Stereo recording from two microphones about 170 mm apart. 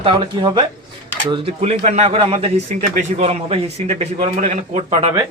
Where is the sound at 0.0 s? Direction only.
30° right (ahead or behind).